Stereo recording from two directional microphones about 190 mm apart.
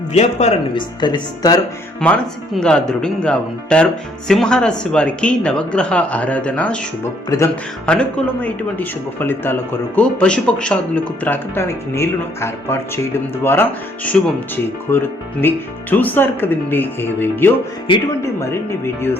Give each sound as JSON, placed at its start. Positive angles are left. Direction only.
{"t": 0.1, "sound": "speech", "side_deg": 35}
{"t": 1.0, "sound": "speech", "side_deg": 20}
{"t": 2.0, "sound": "speech", "side_deg": 5}
{"t": 7.3, "sound": "a man's voice", "side_deg": 15}
{"t": 7.9, "sound": "a man's voice", "side_deg": 5}